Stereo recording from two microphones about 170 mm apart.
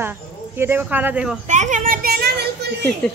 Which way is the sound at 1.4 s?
45° right (ahead or behind).